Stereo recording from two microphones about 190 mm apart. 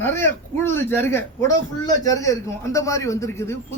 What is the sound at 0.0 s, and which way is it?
Speech, 10° left (ahead or behind).